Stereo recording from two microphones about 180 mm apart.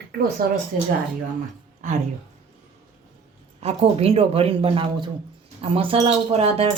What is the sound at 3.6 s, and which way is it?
Speech, 35° right (ahead or behind).